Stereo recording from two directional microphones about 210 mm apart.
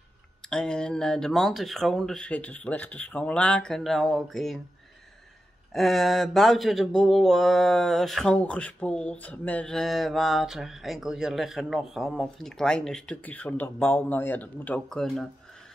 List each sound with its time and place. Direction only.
0.5 s speech: 5° left (ahead or behind)
5.7 s speech: centre (ahead or behind)